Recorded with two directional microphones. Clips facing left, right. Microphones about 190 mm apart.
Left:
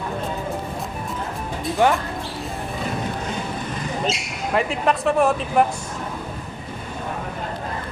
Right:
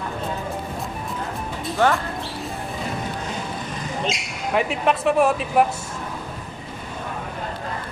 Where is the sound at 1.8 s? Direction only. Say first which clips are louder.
Left 1 dB; 15° left (ahead or behind).